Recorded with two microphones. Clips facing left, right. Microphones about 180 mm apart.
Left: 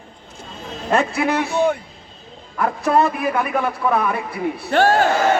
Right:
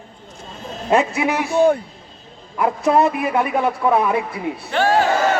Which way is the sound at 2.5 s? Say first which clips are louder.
Right 1 dB; 20° right (ahead or behind).